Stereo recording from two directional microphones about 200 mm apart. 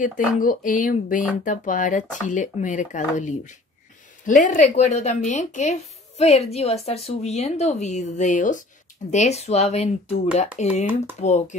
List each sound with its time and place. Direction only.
0.0 s speech: 45° left (ahead or behind)